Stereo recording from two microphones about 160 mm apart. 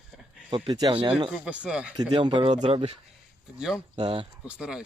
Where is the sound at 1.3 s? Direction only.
5° right (ahead or behind).